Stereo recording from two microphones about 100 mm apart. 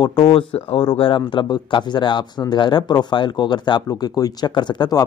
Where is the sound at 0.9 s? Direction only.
60° left (ahead or behind).